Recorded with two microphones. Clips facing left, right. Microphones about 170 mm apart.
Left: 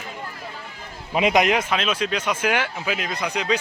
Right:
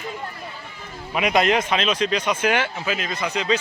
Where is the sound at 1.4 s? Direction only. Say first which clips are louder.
Right 1 dB; 10° left (ahead or behind).